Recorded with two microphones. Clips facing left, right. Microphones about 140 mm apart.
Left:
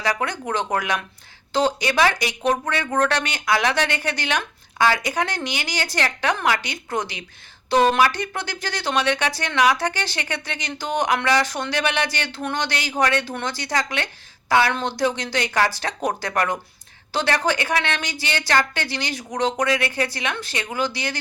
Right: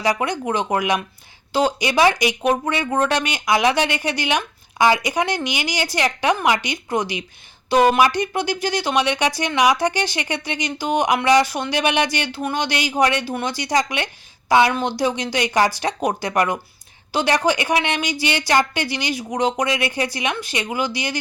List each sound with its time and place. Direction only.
0.0 s speech: 15° right (ahead or behind)